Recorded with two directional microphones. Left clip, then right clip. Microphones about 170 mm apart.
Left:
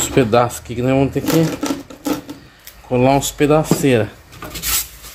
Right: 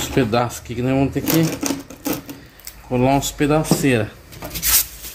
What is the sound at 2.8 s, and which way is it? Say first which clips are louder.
Speech: left 3 dB; 25° left (ahead or behind).